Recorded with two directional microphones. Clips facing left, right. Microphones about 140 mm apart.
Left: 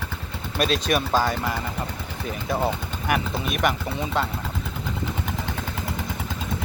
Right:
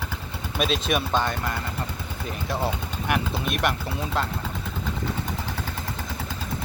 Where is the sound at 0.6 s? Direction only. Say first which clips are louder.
Left 2 dB; centre (ahead or behind).